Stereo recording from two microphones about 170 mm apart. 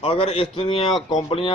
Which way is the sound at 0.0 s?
35° left (ahead or behind).